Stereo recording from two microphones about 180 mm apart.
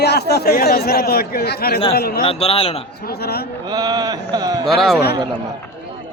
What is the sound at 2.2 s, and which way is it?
Speech, 30° left (ahead or behind).